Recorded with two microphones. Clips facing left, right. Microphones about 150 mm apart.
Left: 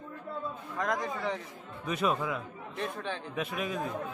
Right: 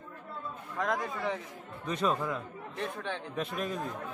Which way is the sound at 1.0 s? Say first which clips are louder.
Even; 5° right (ahead or behind).